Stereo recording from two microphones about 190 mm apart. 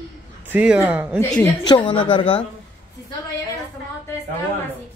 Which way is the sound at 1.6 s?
25° left (ahead or behind).